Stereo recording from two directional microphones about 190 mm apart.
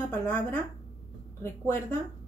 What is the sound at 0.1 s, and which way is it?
A woman's voice, 10° left (ahead or behind).